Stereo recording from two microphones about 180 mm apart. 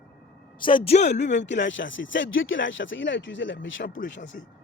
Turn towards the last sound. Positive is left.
turn(degrees=60)  # may be behind; listen again after turning